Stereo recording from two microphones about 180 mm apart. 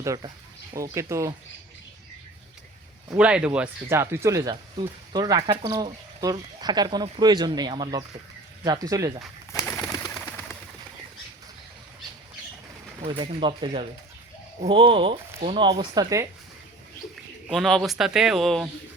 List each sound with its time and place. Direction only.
0.0 s speech: 20° right (ahead or behind)
3.2 s speech: 5° right (ahead or behind)
9.9 s bird: 15° left (ahead or behind)
13.1 s speech: 25° right (ahead or behind)
17.5 s speech: centre (ahead or behind)